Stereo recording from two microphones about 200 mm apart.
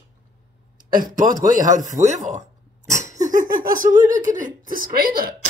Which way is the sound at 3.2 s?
40° right (ahead or behind).